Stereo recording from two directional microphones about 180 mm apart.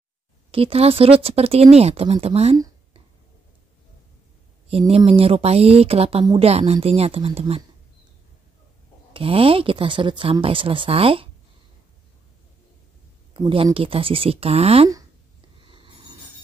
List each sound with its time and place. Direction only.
0.5 s speech: 30° right (ahead or behind)
4.6 s speech: 35° right (ahead or behind)
9.1 s speech: 30° right (ahead or behind)
13.3 s speech: 30° right (ahead or behind)
15.6 s a sound: 30° right (ahead or behind)